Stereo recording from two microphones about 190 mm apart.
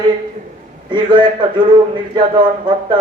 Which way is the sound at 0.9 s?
25° right (ahead or behind).